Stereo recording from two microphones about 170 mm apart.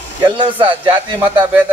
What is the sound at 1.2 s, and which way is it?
Speech, 10° right (ahead or behind).